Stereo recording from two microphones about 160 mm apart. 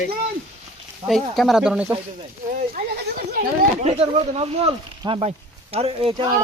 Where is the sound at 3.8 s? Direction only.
40° right (ahead or behind).